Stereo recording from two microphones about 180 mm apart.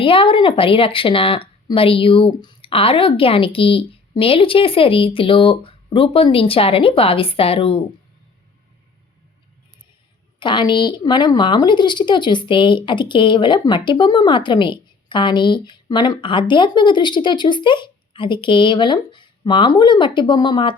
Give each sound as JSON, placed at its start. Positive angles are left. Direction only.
{"t": 0.0, "sound": "speech", "side_deg": 30}
{"t": 10.4, "sound": "a woman's voice", "side_deg": 25}